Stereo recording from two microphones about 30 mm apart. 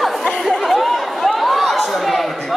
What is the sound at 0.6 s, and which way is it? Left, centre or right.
Chatter, centre.